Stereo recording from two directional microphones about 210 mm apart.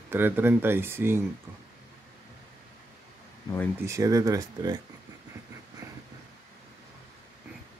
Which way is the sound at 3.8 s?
15° right (ahead or behind).